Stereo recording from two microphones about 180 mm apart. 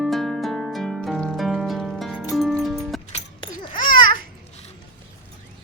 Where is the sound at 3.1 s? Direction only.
25° left (ahead or behind).